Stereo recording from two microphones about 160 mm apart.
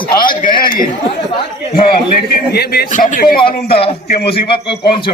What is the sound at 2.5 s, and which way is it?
Speech, 75° left (ahead or behind).